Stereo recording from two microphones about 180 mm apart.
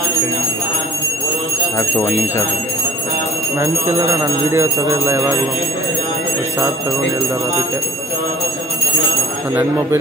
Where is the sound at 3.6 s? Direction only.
15° right (ahead or behind).